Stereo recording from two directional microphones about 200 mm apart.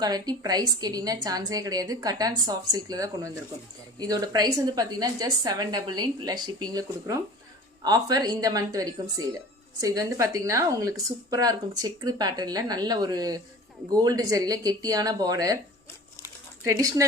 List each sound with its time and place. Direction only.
0.0 s speech: 20° right (ahead or behind)
16.6 s speech: 15° right (ahead or behind)